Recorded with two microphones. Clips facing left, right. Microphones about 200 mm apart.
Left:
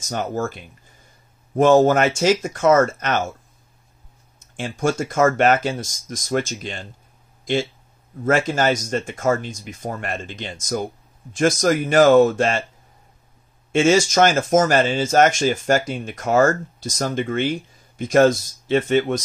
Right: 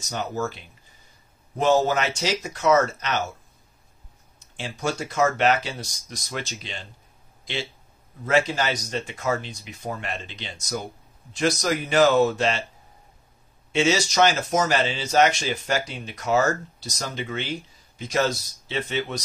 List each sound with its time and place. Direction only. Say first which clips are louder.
0.0 s speech: left 4 dB; 50° left (ahead or behind)
4.4 s speech: left 7 dB; 50° left (ahead or behind)
13.7 s speech: left 6 dB; 50° left (ahead or behind)